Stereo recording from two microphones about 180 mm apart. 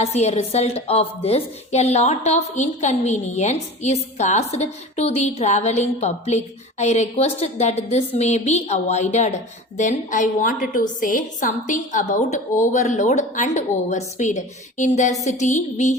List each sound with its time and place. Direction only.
0.0 s a woman's voice: 35° left (ahead or behind)